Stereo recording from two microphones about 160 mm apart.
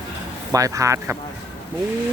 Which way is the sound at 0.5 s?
20° right (ahead or behind).